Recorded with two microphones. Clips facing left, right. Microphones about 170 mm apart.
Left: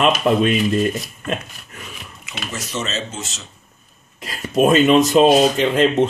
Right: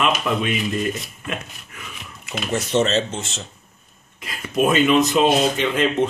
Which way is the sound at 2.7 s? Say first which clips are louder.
Right 7 dB; 65° right (ahead or behind).